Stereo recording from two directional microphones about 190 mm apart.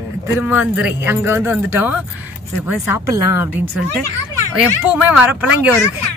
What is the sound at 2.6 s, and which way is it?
Speech, 90° left.